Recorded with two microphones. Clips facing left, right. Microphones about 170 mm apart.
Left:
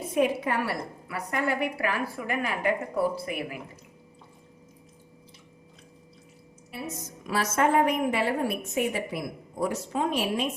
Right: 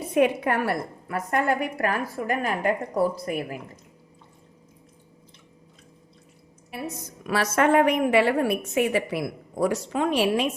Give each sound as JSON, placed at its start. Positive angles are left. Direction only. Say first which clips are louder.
{"t": 0.1, "sound": "a woman's voice", "louder": "right 4 dB", "side_deg": -60}
{"t": 7.3, "sound": "a woman's voice", "louder": "right 3 dB", "side_deg": -70}